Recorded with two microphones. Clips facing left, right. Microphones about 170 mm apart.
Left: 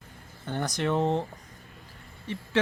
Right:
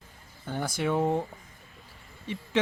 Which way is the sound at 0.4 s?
5° right (ahead or behind).